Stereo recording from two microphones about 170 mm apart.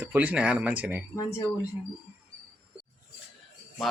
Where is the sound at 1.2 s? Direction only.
15° left (ahead or behind).